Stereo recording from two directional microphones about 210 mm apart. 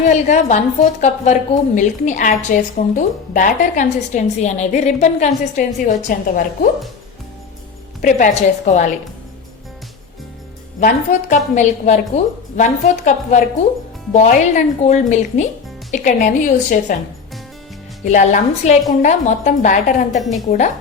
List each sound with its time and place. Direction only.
0.1 s a woman's voice: 35° left (ahead or behind)
8.0 s a woman's voice: 35° left (ahead or behind)
10.8 s a woman's voice: 35° left (ahead or behind)
18.0 s a woman's voice: 35° left (ahead or behind)